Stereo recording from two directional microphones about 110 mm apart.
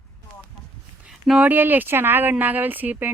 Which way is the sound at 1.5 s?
15° right (ahead or behind).